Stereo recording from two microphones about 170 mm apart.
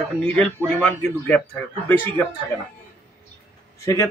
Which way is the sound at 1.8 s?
10° left (ahead or behind).